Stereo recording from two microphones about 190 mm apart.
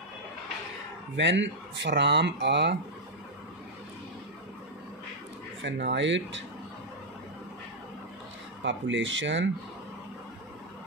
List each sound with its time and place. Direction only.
1.1 s speech: 70° right (ahead or behind)
5.6 s speech: 70° right (ahead or behind)
8.6 s speech: 75° right (ahead or behind)